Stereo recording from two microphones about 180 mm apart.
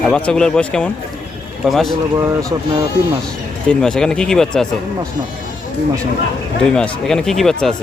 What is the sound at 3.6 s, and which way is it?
Speech, 5° left (ahead or behind).